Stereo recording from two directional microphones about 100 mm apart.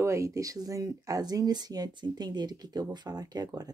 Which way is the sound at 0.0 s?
30° right (ahead or behind).